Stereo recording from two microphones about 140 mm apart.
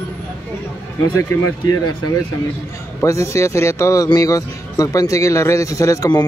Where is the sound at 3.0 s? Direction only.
20° left (ahead or behind).